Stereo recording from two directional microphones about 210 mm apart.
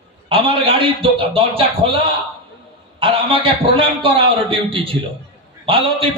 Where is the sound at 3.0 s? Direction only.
25° right (ahead or behind).